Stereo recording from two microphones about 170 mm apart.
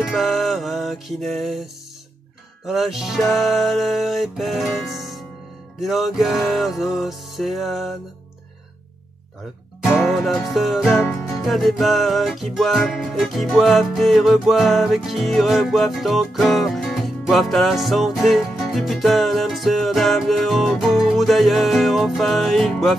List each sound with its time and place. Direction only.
0.0 s music: centre (ahead or behind)
10.0 s music: centre (ahead or behind)